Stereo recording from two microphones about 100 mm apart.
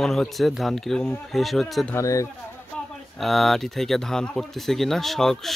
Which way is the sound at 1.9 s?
30° left (ahead or behind).